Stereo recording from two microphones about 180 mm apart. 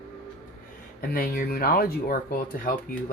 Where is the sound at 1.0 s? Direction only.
55° left (ahead or behind).